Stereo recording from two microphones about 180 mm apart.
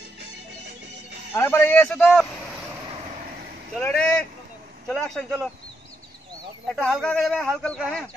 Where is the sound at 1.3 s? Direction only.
15° left (ahead or behind).